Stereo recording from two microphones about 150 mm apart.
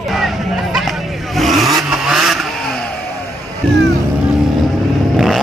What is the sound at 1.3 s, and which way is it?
Vehicle, centre (ahead or behind).